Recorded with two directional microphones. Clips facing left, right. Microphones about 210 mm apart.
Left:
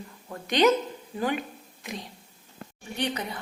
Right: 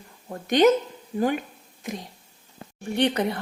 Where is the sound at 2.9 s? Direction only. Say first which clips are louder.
Right 8 dB; 55° right (ahead or behind).